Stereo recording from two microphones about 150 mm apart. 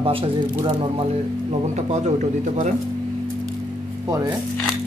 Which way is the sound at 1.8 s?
50° right (ahead or behind).